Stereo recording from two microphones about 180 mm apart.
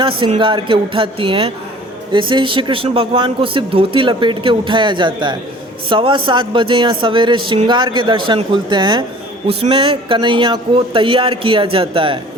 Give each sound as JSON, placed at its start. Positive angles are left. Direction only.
{"t": 0.0, "sound": "a man's voice", "side_deg": -30}